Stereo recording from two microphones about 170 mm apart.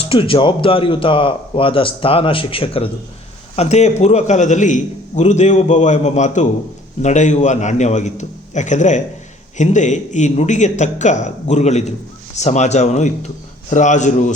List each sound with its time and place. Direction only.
0.0 s a man's voice: 35° left (ahead or behind)